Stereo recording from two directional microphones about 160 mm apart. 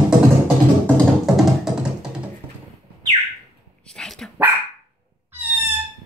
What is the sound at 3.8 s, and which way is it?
Dog, 5° left (ahead or behind).